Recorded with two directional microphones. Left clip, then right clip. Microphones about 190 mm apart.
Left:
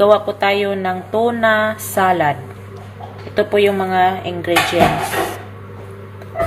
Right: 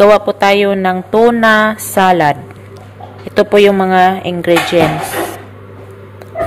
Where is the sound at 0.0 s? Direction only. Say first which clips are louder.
Right 5 dB; 55° right (ahead or behind).